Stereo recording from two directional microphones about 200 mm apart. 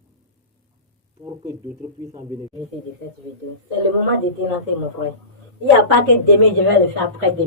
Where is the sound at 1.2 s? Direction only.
15° right (ahead or behind).